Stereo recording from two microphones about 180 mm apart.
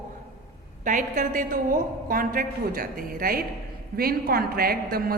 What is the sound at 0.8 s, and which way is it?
A woman's voice, 45° right (ahead or behind).